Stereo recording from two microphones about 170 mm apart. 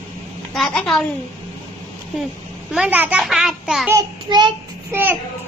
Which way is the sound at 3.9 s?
25° right (ahead or behind).